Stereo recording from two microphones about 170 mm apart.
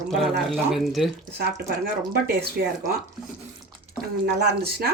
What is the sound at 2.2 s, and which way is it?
Speech, 65° right (ahead or behind).